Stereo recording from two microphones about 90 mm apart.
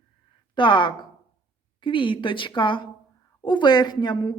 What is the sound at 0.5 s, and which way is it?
Speech, 60° left (ahead or behind).